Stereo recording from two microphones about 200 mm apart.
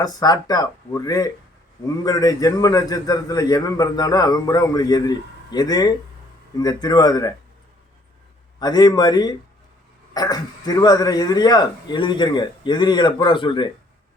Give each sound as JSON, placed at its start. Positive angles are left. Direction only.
{"t": 0.0, "sound": "a man's voice", "side_deg": 20}
{"t": 8.5, "sound": "a man's voice", "side_deg": 20}